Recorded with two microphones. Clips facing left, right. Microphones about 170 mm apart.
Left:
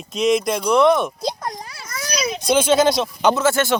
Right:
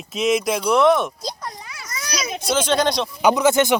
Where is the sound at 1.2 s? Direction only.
55° left (ahead or behind).